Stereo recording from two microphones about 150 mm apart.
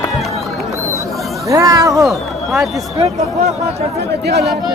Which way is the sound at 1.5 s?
20° right (ahead or behind).